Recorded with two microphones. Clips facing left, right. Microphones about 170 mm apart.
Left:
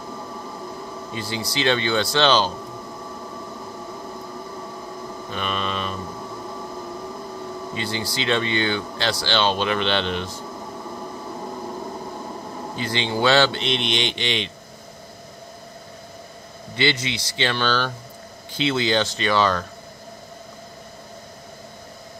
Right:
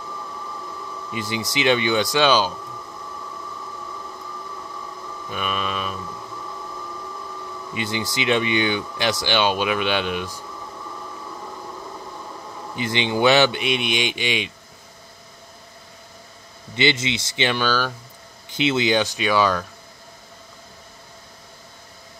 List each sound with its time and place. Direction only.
1.1 s speech: 20° right (ahead or behind)
5.3 s mantra: 5° right (ahead or behind)
7.7 s speech: 20° right (ahead or behind)
12.7 s speech: 20° right (ahead or behind)
16.7 s speech: 20° right (ahead or behind)
18.5 s speech: 20° right (ahead or behind)